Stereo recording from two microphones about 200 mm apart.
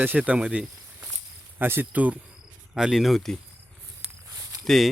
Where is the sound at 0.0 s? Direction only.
10° right (ahead or behind).